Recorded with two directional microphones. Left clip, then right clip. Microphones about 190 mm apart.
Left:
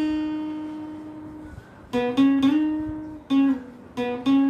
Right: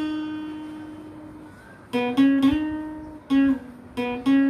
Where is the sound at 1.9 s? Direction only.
15° right (ahead or behind).